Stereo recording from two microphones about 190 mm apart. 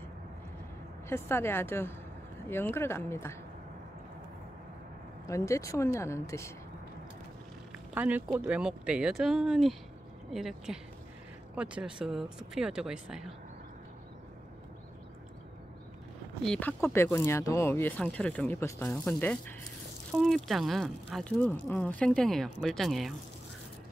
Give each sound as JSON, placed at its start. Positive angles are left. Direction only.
{"t": 1.0, "sound": "speech", "side_deg": 15}
{"t": 5.2, "sound": "speech", "side_deg": 15}
{"t": 7.9, "sound": "speech", "side_deg": -10}
{"t": 16.4, "sound": "speech", "side_deg": 10}